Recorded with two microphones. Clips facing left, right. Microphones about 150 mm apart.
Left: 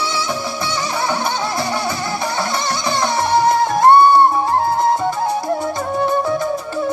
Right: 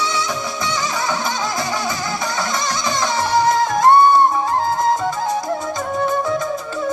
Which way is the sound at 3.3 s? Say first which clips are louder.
Left 1 dB; 30° left (ahead or behind).